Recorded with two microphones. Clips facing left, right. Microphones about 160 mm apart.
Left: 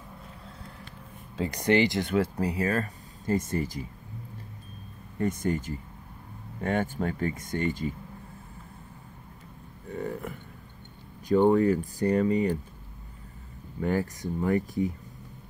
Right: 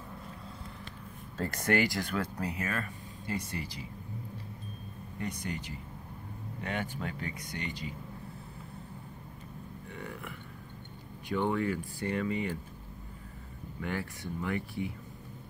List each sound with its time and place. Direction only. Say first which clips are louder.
1.3 s speech: left 5 dB; 15° left (ahead or behind); by 3.8 s 45° left (ahead or behind)
5.2 s speech: left 10 dB; 45° left (ahead or behind)
9.8 s speech: left 11 dB; 40° left (ahead or behind)
13.7 s speech: left 9 dB; 40° left (ahead or behind)